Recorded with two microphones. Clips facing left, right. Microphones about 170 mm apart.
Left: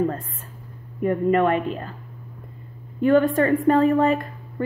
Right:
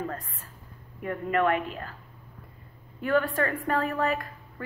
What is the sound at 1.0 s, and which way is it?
Speech, 25° left (ahead or behind).